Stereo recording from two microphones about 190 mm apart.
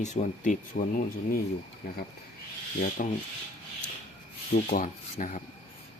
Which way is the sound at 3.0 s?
45° left (ahead or behind).